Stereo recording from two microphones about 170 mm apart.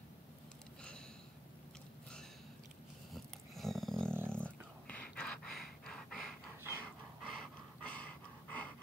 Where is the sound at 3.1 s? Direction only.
Centre (ahead or behind).